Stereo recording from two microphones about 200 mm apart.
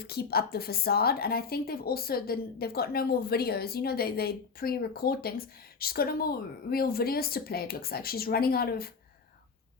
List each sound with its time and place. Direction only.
0.0 s a woman's voice: 50° left (ahead or behind)